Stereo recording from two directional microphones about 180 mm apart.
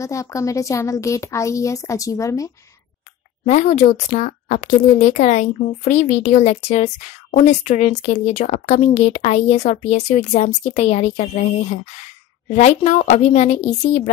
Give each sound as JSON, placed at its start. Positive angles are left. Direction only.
{"t": 0.0, "sound": "a woman's voice", "side_deg": 15}
{"t": 3.4, "sound": "speech", "side_deg": 40}
{"t": 12.4, "sound": "speech", "side_deg": 40}